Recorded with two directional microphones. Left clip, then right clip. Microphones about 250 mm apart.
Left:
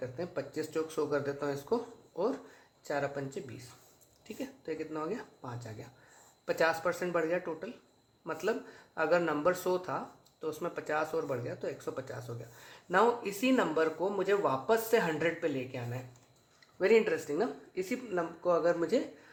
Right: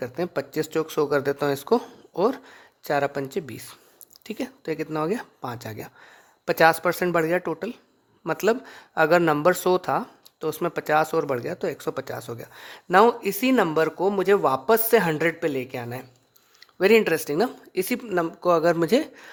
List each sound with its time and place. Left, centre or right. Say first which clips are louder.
0.0 s speech: right 10 dB; right